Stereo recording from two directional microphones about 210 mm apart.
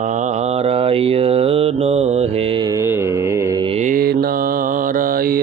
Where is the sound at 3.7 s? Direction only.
35° right (ahead or behind).